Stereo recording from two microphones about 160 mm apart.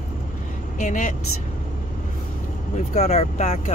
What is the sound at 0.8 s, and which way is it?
Speech, 50° left (ahead or behind).